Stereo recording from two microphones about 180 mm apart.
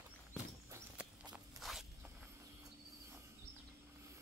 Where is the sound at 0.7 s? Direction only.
5° right (ahead or behind).